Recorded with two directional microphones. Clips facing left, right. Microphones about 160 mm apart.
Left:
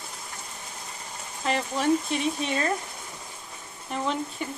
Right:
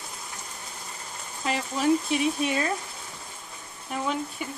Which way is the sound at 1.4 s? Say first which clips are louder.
Even; 5° right (ahead or behind).